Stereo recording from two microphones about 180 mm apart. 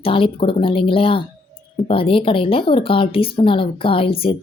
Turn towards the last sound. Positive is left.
turn(degrees=30)  # may be behind; listen again after turning